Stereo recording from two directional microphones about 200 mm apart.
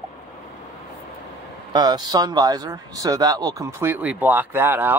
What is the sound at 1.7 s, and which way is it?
Speech, 20° right (ahead or behind).